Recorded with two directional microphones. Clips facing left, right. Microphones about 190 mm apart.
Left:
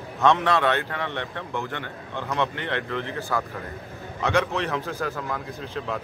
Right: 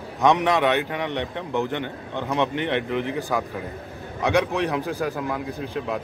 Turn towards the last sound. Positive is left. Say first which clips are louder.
# right 3 dB
turn(degrees=-15)  # may be behind; listen again after turning